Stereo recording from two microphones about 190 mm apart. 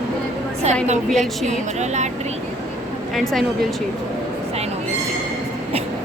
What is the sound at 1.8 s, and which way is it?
Speech, 40° right (ahead or behind).